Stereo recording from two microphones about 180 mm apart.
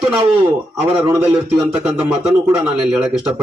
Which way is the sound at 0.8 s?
15° right (ahead or behind).